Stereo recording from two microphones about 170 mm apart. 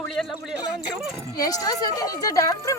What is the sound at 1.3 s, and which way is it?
Speech, 20° left (ahead or behind).